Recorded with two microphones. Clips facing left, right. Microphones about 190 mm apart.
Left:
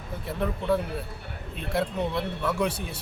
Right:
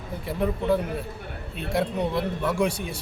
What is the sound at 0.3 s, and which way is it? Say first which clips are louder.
Speech: right 2 dB; centre (ahead or behind).